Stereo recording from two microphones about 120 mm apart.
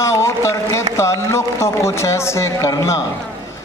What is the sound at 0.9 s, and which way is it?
A man's voice, 25° left (ahead or behind).